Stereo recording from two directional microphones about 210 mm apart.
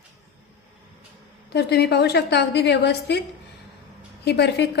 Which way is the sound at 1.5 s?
50° left (ahead or behind).